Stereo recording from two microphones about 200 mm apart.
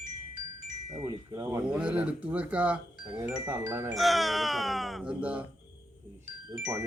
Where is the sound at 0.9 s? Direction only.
15° right (ahead or behind).